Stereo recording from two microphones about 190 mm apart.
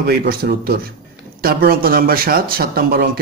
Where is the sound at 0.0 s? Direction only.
55° right (ahead or behind).